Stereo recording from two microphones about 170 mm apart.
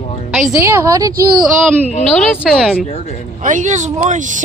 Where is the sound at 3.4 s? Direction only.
50° right (ahead or behind).